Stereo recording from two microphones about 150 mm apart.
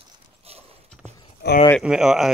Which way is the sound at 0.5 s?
40° right (ahead or behind).